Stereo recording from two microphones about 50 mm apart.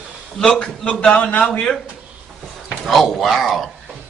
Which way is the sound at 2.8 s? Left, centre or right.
Centre.